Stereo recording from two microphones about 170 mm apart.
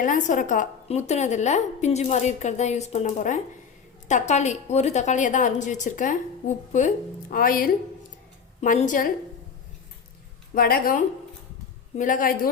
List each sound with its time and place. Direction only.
0.0 s a woman's voice: 50° left (ahead or behind)
10.5 s a woman's voice: 60° left (ahead or behind)